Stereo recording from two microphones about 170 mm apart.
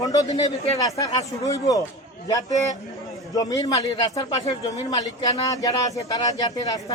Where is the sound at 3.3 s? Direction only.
20° left (ahead or behind).